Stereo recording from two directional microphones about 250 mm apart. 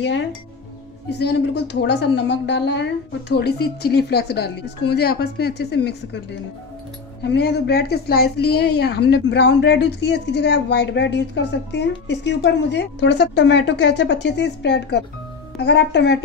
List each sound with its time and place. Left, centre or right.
0.0 s a woman's voice: left
7.2 s a woman's voice: left